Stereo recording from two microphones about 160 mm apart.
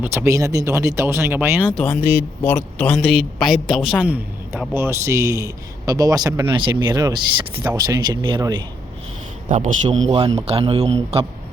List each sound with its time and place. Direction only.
0.0 s speech: 15° right (ahead or behind)
1.7 s a man's voice: 5° left (ahead or behind); by 8.5 s 25° right (ahead or behind)
9.5 s a man's voice: 50° right (ahead or behind)
10.2 s a man's voice: 25° right (ahead or behind)
10.4 s speech: 35° right (ahead or behind)